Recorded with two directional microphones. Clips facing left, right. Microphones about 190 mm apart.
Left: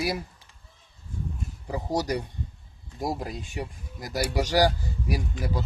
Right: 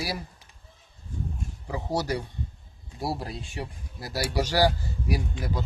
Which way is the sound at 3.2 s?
15° left (ahead or behind).